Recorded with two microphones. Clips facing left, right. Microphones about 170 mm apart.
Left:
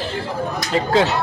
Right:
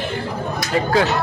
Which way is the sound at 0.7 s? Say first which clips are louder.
Even; 25° left (ahead or behind).